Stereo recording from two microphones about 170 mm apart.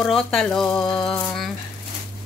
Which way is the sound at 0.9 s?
25° left (ahead or behind).